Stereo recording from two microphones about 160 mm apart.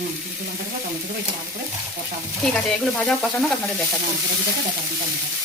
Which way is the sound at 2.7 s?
5° left (ahead or behind).